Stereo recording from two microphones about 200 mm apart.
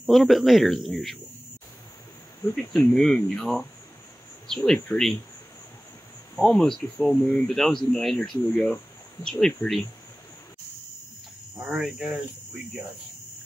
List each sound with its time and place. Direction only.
0.0 s speech: centre (ahead or behind)
2.4 s speech: 5° left (ahead or behind)
6.3 s speech: 5° left (ahead or behind)
11.5 s speech: 5° right (ahead or behind)